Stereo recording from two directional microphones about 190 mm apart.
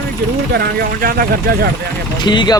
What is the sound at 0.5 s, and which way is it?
Speech, 50° right (ahead or behind).